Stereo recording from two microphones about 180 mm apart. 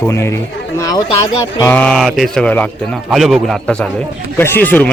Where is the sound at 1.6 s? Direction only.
10° left (ahead or behind).